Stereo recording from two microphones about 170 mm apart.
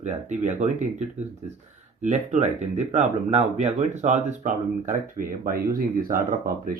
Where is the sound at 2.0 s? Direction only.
45° right (ahead or behind).